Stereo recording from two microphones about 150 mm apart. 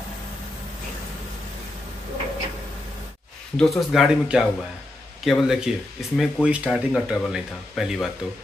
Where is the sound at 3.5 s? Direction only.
Centre (ahead or behind).